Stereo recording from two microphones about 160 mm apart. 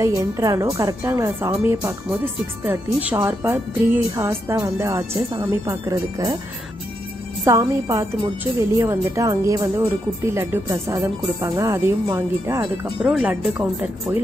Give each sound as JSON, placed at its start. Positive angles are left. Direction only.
{"t": 0.0, "sound": "a woman's voice", "side_deg": -20}
{"t": 7.4, "sound": "speech", "side_deg": -20}
{"t": 12.8, "sound": "a woman's voice", "side_deg": -5}